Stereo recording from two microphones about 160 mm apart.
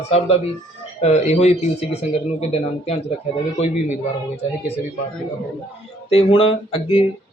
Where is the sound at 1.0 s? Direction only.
45° left (ahead or behind).